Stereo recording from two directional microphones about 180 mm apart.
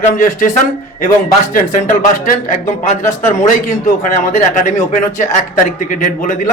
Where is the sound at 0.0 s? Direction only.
45° left (ahead or behind).